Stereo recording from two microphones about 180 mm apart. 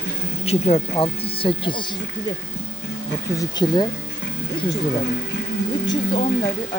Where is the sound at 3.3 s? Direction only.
25° left (ahead or behind).